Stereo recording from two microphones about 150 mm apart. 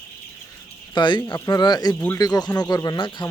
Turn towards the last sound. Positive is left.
turn(degrees=30)  # may be behind; listen again after turning